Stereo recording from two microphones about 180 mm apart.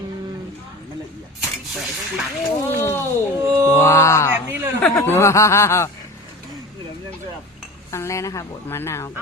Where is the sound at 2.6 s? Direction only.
15° left (ahead or behind).